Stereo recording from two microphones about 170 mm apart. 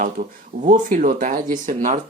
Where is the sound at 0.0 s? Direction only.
50° right (ahead or behind).